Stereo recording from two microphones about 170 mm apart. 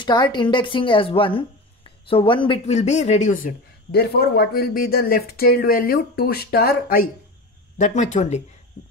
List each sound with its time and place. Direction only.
0.0 s speech: 25° left (ahead or behind); by 3.5 s 45° left (ahead or behind)
3.9 s speech: 70° left (ahead or behind)
7.7 s speech: 45° left (ahead or behind)